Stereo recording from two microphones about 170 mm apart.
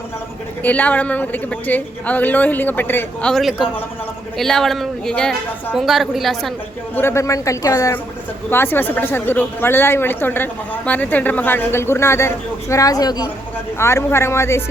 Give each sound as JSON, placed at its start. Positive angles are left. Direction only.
{"t": 0.6, "sound": "a woman's voice", "side_deg": 10}
{"t": 6.9, "sound": "a woman's voice", "side_deg": 15}